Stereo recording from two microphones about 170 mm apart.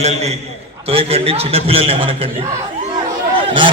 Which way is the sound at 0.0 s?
40° right (ahead or behind).